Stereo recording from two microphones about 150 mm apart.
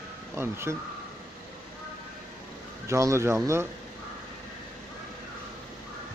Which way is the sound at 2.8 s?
20° right (ahead or behind).